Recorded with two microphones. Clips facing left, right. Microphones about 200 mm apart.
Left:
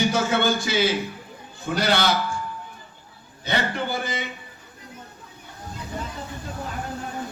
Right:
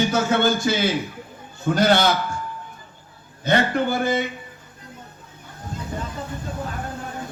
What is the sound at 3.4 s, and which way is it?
Speech, 50° right (ahead or behind).